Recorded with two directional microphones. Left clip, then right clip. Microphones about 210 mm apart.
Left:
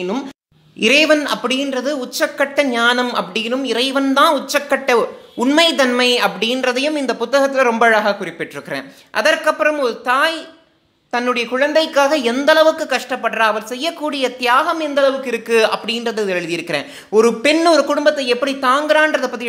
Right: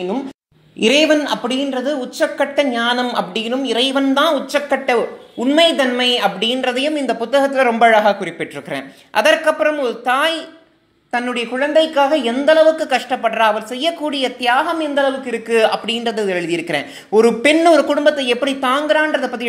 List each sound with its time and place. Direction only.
0.7 s a woman's voice: 10° left (ahead or behind)
12.7 s a woman's voice: 5° left (ahead or behind)